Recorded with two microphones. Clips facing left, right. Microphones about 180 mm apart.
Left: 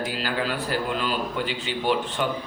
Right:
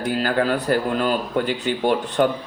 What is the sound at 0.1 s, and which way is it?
Speech, 50° right (ahead or behind).